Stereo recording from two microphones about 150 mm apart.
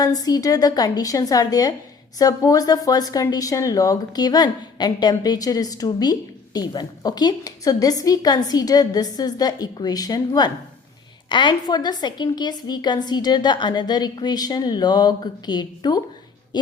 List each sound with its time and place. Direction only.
0.0 s speech: 25° left (ahead or behind)